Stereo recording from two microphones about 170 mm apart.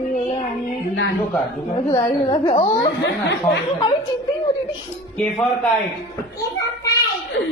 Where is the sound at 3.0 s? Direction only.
85° left.